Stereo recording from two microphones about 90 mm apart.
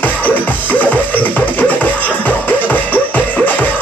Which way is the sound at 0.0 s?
20° left (ahead or behind).